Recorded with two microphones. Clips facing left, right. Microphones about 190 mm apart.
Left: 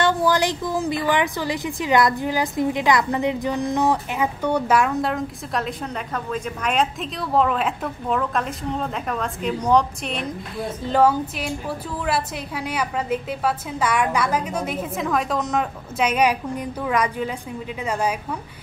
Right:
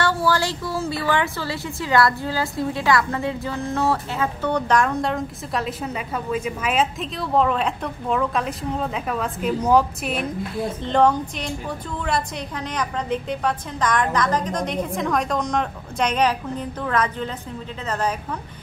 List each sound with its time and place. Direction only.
0.0 s speech: 20° left (ahead or behind)